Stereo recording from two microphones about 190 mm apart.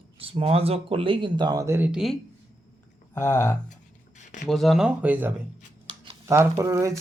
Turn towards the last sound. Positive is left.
turn(degrees=-15)  # may be behind; listen again after turning